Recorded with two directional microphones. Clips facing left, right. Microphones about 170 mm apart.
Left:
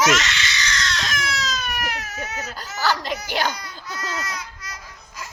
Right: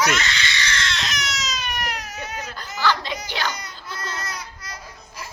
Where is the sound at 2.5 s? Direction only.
40° left (ahead or behind).